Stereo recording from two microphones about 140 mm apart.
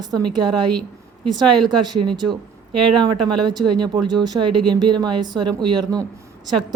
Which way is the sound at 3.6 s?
30° right (ahead or behind).